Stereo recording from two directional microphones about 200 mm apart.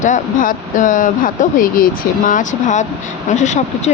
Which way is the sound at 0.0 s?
40° left (ahead or behind).